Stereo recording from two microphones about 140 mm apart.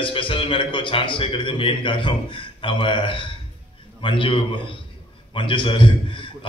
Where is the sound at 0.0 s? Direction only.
40° left (ahead or behind).